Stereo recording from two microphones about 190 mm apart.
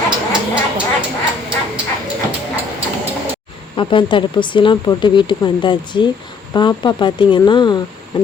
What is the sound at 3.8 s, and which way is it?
Speech, 25° left (ahead or behind).